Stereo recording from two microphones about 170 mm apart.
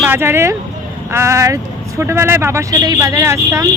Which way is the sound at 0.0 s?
15° right (ahead or behind).